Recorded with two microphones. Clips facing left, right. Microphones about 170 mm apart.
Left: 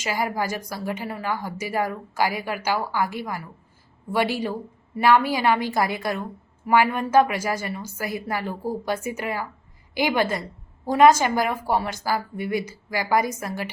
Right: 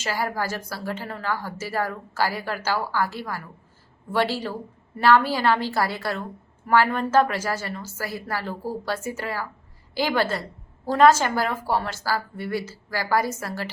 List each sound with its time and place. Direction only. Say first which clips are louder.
0.0 s a woman's voice: left 1 dB; 15° left (ahead or behind)